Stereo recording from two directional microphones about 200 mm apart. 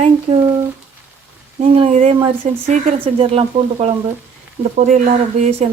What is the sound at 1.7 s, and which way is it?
Speech, 30° right (ahead or behind).